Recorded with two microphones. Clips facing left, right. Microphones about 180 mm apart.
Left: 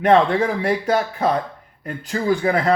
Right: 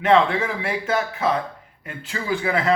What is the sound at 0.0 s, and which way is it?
Speech, 40° left (ahead or behind).